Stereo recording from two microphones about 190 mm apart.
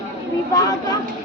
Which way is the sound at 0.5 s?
20° left (ahead or behind).